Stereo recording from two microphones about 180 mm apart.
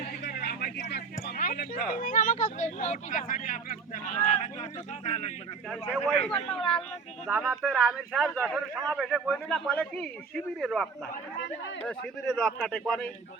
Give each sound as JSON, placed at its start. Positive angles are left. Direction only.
{"t": 0.2, "sound": "speech", "side_deg": 65}
{"t": 5.9, "sound": "a man's voice", "side_deg": 0}